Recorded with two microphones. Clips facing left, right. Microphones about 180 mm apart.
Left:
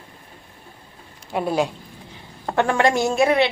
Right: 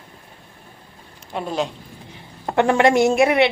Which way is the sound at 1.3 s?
10° left (ahead or behind).